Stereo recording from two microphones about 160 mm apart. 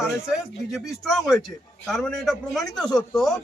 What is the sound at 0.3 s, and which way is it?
A man's voice, centre (ahead or behind).